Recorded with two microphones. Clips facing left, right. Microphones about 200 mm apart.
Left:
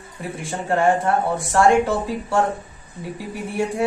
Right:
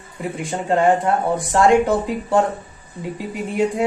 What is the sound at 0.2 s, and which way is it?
Speech, 20° right (ahead or behind).